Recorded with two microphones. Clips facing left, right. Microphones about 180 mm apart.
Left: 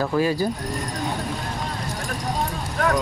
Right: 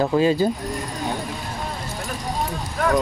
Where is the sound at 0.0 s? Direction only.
20° right (ahead or behind).